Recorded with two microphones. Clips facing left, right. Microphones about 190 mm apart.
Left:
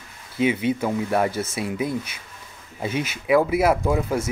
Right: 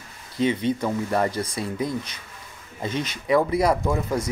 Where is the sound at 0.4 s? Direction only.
5° left (ahead or behind).